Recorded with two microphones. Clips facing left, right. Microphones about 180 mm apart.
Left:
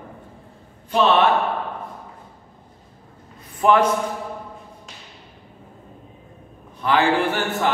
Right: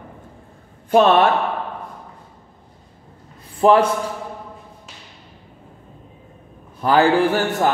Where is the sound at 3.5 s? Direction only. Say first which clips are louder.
Right 3 dB; 30° right (ahead or behind).